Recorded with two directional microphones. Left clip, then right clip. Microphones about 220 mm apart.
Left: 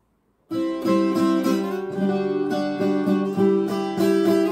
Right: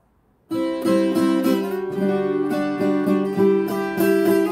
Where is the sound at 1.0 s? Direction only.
Centre (ahead or behind).